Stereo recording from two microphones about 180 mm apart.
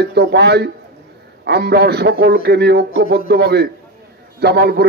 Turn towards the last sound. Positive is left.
turn(degrees=-65)  # may be behind; listen again after turning